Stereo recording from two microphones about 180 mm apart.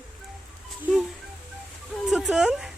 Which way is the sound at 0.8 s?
Centre (ahead or behind).